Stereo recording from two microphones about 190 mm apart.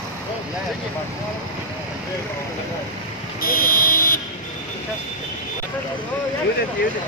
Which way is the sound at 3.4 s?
50° left (ahead or behind).